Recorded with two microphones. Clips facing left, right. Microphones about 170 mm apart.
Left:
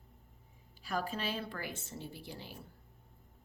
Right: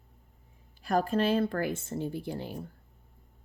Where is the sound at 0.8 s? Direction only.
50° right (ahead or behind).